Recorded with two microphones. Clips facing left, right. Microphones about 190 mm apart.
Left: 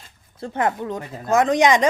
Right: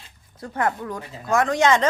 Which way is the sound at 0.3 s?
25° left (ahead or behind).